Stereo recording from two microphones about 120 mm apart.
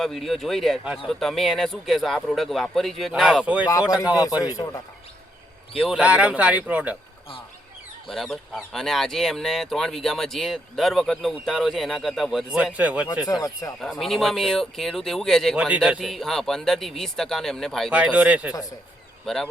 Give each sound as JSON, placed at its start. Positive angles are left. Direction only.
{"t": 0.0, "sound": "speech", "side_deg": 0}
{"t": 3.4, "sound": "speech", "side_deg": -10}
{"t": 3.7, "sound": "speech", "side_deg": 30}
{"t": 5.7, "sound": "speech", "side_deg": 5}
{"t": 6.0, "sound": "speech", "side_deg": -10}
{"t": 8.1, "sound": "speech", "side_deg": 5}
{"t": 13.4, "sound": "speech", "side_deg": 25}
{"t": 14.0, "sound": "speech", "side_deg": 0}
{"t": 15.5, "sound": "speech", "side_deg": -10}
{"t": 17.9, "sound": "speech", "side_deg": -10}
{"t": 19.2, "sound": "speech", "side_deg": 5}